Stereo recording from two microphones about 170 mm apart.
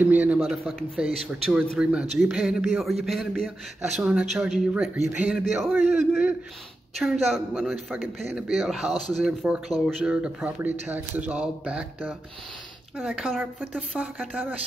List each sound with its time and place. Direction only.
0.0 s a man's voice: 10° right (ahead or behind)
8.8 s speech: 40° right (ahead or behind)
9.2 s a man's voice: centre (ahead or behind)